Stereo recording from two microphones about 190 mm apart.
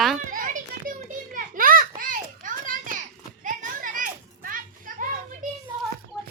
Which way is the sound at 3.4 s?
45° right (ahead or behind).